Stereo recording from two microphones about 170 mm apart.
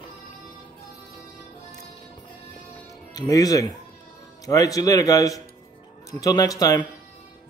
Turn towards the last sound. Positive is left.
turn(degrees=20)  # may be behind; listen again after turning